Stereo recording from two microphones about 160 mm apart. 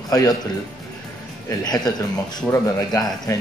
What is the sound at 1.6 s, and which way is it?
Speech, 25° left (ahead or behind).